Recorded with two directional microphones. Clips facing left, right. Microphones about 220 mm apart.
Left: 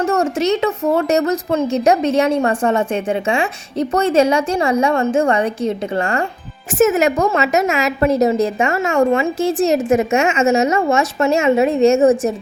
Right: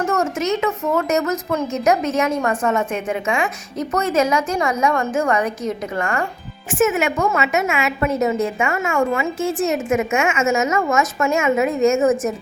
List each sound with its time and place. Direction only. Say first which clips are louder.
0.1 s a woman's voice: left 4 dB; 30° left (ahead or behind)